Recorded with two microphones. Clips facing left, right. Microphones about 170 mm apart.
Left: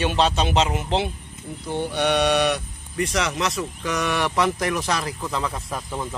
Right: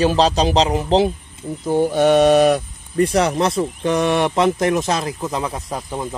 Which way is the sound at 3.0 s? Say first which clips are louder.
Right 7 dB; 30° right (ahead or behind).